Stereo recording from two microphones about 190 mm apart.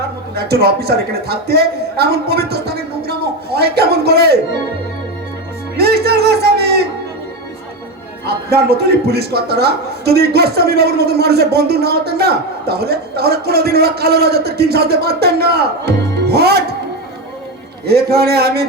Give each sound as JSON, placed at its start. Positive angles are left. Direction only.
{"t": 0.3, "sound": "speech", "side_deg": -55}
{"t": 5.7, "sound": "music", "side_deg": -55}
{"t": 8.3, "sound": "speech", "side_deg": -55}
{"t": 17.8, "sound": "speech", "side_deg": -55}